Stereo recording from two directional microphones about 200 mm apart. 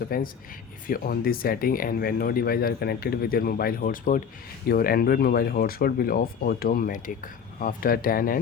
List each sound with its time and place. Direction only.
0.1 s speech: 45° left (ahead or behind)